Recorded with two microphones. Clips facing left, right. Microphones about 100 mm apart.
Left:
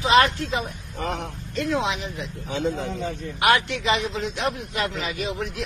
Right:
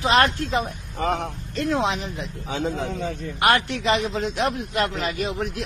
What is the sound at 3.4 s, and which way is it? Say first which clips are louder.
Speech: even; 35° right (ahead or behind).